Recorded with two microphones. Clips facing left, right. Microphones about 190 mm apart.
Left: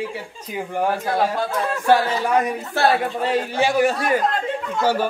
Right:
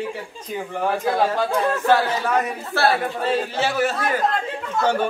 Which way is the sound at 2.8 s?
20° left (ahead or behind).